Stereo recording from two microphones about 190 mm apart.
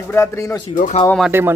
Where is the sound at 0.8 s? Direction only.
40° left (ahead or behind).